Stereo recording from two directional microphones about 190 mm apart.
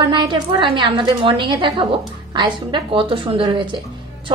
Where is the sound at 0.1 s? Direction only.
25° right (ahead or behind).